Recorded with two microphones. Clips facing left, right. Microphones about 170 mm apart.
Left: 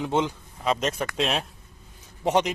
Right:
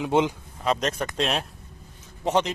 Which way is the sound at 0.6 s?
Centre (ahead or behind).